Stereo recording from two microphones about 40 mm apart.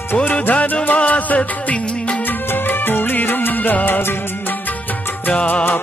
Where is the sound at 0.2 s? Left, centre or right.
Left.